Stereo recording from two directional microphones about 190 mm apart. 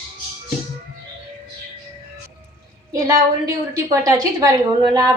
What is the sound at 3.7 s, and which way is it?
A woman's voice, 20° right (ahead or behind).